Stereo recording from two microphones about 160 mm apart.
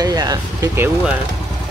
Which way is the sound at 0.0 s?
25° right (ahead or behind).